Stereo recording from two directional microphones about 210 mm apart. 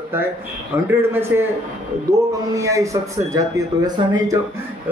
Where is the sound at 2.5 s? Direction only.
15° right (ahead or behind).